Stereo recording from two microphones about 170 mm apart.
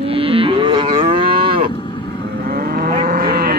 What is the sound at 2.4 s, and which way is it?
Livestock, 60° right (ahead or behind).